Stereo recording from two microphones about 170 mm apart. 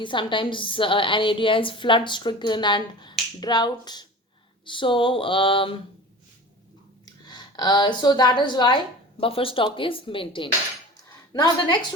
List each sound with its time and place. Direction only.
0.0 s a woman's voice: 30° left (ahead or behind)
7.0 s a woman's voice: 25° left (ahead or behind)